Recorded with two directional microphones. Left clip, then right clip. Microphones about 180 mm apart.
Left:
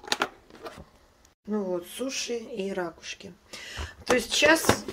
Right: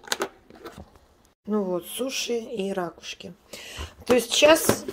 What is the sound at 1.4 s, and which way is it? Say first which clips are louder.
Speech: right 3 dB; 20° right (ahead or behind).